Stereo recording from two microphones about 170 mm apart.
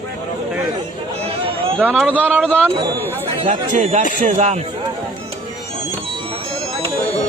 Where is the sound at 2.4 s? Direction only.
5° left (ahead or behind).